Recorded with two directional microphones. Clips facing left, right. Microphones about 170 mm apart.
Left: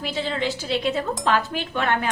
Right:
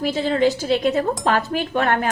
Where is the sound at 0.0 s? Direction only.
45° right (ahead or behind).